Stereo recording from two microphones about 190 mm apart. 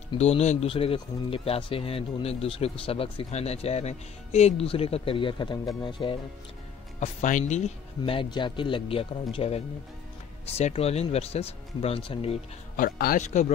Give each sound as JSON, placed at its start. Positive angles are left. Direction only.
{"t": 0.1, "sound": "speech", "side_deg": 30}
{"t": 7.0, "sound": "speech", "side_deg": 40}
{"t": 12.7, "sound": "speech", "side_deg": 45}